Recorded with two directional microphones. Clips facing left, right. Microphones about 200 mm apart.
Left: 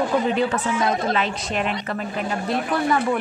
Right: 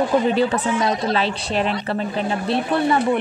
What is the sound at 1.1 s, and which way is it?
A woman's voice, 30° right (ahead or behind).